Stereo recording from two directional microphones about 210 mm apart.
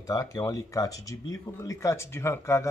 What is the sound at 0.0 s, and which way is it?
Speech, 15° left (ahead or behind).